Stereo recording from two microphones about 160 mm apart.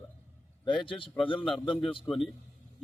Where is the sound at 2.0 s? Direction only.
Centre (ahead or behind).